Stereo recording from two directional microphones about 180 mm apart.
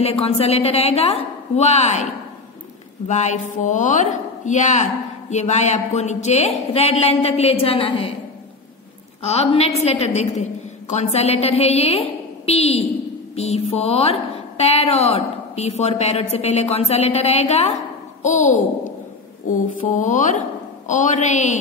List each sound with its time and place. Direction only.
0.0 s a woman's voice: 35° left (ahead or behind)
3.1 s a woman's voice: 40° left (ahead or behind)
9.2 s a woman's voice: 35° left (ahead or behind)